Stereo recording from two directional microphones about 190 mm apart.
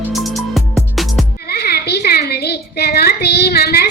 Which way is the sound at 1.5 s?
55° left (ahead or behind).